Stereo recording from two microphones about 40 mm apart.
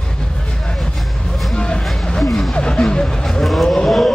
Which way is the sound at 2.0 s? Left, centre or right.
Left.